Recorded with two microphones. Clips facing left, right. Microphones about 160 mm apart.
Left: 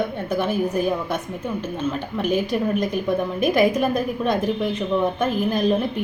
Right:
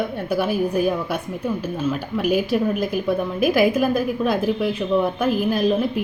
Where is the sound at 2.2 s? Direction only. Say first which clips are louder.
Right 2 dB; 5° right (ahead or behind).